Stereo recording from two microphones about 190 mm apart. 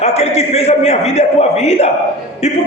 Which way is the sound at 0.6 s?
35° left (ahead or behind).